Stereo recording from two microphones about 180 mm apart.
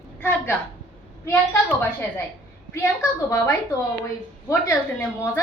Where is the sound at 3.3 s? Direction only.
15° left (ahead or behind).